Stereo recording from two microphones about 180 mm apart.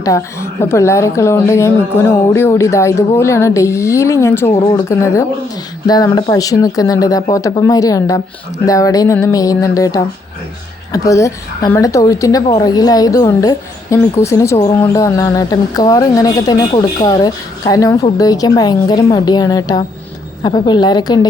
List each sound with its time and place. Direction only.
0.0 s a woman's voice: 15° left (ahead or behind)